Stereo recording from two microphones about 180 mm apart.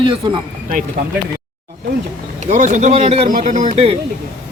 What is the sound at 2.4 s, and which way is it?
Speech, 40° right (ahead or behind).